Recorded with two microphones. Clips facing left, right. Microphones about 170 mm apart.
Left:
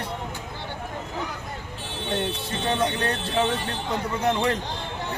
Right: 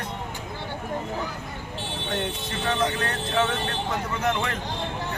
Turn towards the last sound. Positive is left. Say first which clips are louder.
# left 3 dB
turn(degrees=30)  # may be behind; listen again after turning